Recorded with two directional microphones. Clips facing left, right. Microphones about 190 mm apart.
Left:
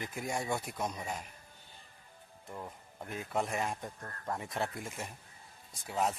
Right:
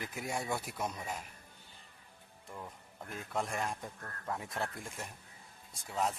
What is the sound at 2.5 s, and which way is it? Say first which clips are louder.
Speech: left 3 dB; 15° left (ahead or behind).